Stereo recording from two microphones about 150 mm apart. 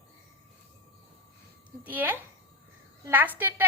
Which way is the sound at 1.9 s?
10° right (ahead or behind).